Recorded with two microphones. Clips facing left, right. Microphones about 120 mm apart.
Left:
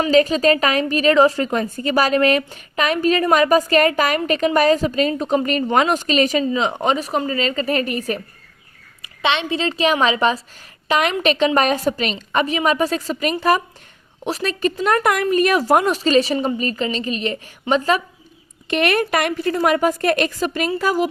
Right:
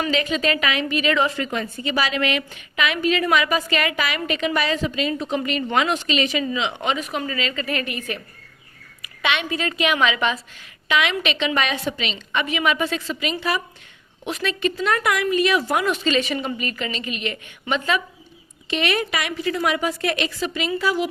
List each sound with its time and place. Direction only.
0.1 s a woman's voice: 40° left (ahead or behind)
9.0 s a woman's voice: 30° left (ahead or behind)
18.7 s a woman's voice: 50° left (ahead or behind)